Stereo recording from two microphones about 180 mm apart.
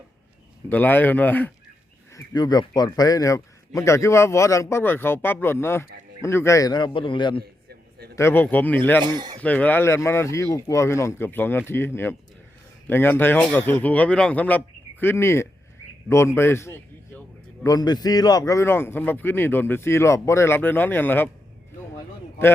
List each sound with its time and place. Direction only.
0.7 s speech: 10° left (ahead or behind)
2.1 s speech: 20° left (ahead or behind)
7.7 s a sound: 60° right (ahead or behind)
8.1 s speech: 15° left (ahead or behind)
9.1 s speech: 25° right (ahead or behind)
9.4 s speech: 10° left (ahead or behind)
12.9 s speech: 10° left (ahead or behind)
16.0 s a sound: 15° left (ahead or behind)
17.7 s speech: 20° left (ahead or behind)